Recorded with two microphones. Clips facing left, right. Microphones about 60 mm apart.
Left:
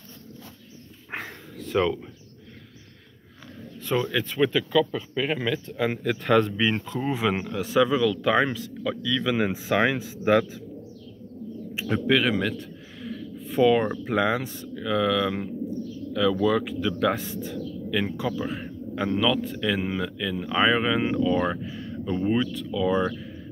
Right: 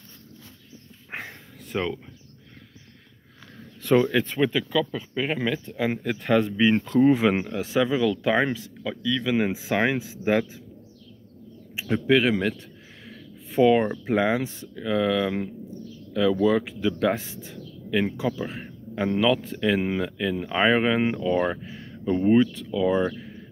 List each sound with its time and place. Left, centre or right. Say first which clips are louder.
1.1 s dog: left 1 dB; centre
1.7 s speech: left 4 dB; centre
3.9 s speech: right 5 dB; right
4.4 s speech: left 5 dB; centre
6.8 s speech: right 8 dB; right; by 10.6 s centre
11.7 s a sound: right 1 dB; centre
12.1 s speech: right 2 dB; right
13.1 s a sound: even; right
14.0 s speech: right 1 dB; right